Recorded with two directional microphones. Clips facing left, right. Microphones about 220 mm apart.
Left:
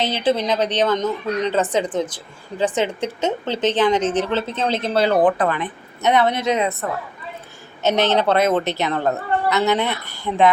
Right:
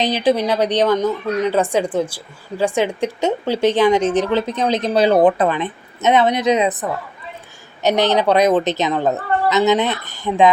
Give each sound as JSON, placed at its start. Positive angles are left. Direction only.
{"t": 0.0, "sound": "a woman's voice", "side_deg": -15}
{"t": 7.8, "sound": "a woman's voice", "side_deg": -15}